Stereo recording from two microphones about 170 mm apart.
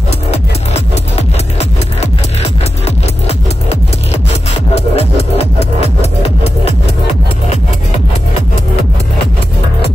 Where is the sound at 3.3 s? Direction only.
40° left (ahead or behind).